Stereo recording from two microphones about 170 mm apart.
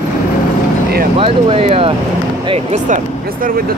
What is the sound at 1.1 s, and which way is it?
Speech, 35° right (ahead or behind).